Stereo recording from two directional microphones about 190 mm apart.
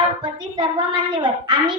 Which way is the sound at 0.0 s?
25° right (ahead or behind).